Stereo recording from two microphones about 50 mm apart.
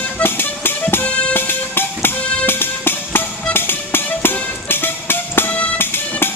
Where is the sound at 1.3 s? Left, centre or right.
Left.